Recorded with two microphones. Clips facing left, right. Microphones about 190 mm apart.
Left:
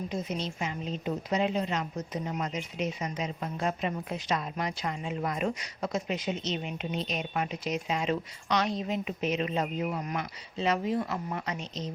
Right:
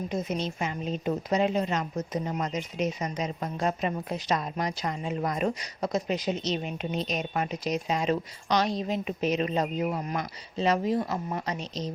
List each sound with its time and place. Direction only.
0.1 s a woman's voice: 50° right (ahead or behind)